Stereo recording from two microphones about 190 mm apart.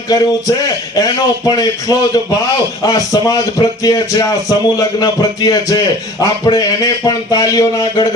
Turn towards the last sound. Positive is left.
turn(degrees=20)  # may be behind; listen again after turning